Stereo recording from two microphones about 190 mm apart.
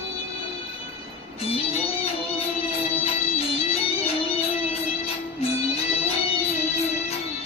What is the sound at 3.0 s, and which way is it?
Music, 30° left (ahead or behind).